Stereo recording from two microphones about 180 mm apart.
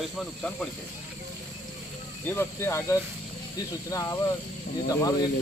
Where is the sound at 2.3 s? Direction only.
15° left (ahead or behind).